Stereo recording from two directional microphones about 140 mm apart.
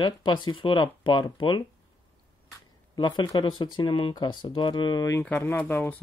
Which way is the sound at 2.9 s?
35° left (ahead or behind).